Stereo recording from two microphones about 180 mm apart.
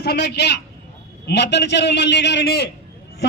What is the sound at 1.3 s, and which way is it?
A man's voice, 70° left (ahead or behind).